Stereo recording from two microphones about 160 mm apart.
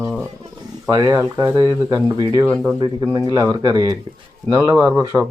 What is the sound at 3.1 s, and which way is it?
A man's voice, 25° right (ahead or behind).